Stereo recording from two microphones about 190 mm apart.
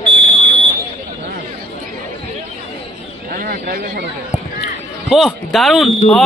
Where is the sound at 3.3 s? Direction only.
50° right (ahead or behind).